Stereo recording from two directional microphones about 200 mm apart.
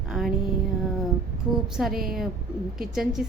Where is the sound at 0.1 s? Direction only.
Centre (ahead or behind).